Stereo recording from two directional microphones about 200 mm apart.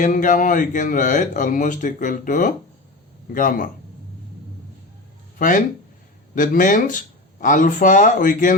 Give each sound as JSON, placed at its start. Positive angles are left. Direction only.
{"t": 0.0, "sound": "speech", "side_deg": 40}
{"t": 5.4, "sound": "speech", "side_deg": 40}